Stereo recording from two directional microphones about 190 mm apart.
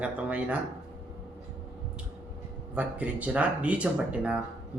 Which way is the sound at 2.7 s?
10° right (ahead or behind).